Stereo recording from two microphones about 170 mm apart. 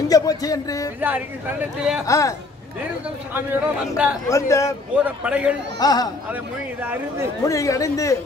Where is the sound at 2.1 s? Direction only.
20° left (ahead or behind).